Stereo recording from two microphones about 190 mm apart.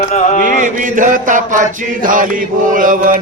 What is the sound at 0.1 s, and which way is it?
Chant, 40° left (ahead or behind).